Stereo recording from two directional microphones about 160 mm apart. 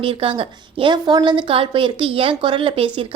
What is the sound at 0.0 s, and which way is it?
A woman's voice, 35° right (ahead or behind).